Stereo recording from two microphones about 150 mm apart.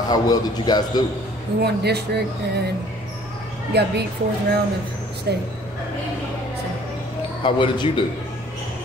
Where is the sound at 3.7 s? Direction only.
90° right.